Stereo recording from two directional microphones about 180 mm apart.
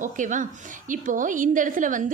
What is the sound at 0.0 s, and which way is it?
A woman's voice, 45° right (ahead or behind).